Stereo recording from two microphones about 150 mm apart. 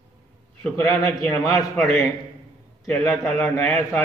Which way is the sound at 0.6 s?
5° left (ahead or behind).